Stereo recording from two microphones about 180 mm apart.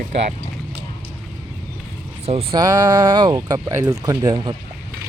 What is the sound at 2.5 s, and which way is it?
Speech, 20° right (ahead or behind).